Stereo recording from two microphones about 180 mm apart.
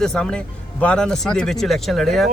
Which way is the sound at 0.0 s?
5° left (ahead or behind).